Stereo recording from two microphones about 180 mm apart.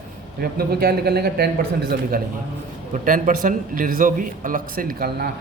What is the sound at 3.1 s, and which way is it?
A man's voice, 50° right (ahead or behind).